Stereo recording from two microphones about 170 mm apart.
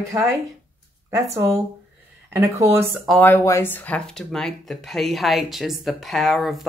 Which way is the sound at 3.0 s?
5° left (ahead or behind).